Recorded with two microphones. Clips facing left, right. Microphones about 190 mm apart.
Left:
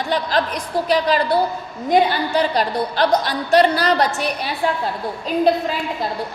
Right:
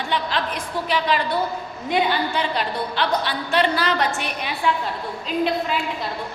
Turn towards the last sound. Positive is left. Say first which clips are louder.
# left 2 dB
turn(degrees=45)  # may be behind; listen again after turning